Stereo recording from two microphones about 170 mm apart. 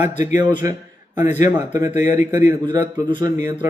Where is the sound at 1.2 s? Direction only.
45° left (ahead or behind).